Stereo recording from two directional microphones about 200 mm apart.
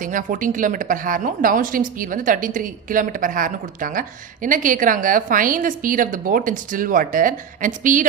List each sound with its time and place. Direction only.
0.0 s a woman's voice: 40° right (ahead or behind)